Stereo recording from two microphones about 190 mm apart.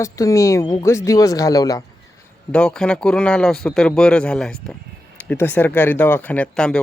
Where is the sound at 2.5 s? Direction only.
5° left (ahead or behind).